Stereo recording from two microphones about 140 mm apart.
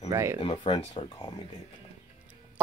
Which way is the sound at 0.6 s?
30° left (ahead or behind).